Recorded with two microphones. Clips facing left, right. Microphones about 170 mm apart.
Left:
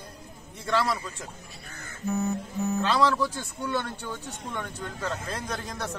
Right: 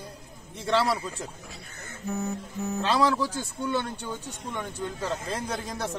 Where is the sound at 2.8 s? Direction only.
25° right (ahead or behind).